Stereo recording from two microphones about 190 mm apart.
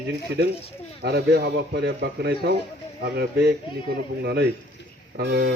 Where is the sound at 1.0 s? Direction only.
55° right (ahead or behind).